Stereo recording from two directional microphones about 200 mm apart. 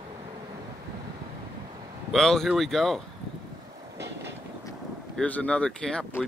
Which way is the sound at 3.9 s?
55° right (ahead or behind).